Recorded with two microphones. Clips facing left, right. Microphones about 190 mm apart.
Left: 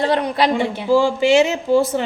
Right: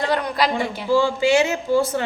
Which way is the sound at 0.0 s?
25° left (ahead or behind).